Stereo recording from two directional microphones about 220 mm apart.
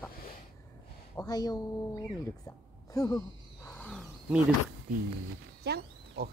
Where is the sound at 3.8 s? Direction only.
5° left (ahead or behind).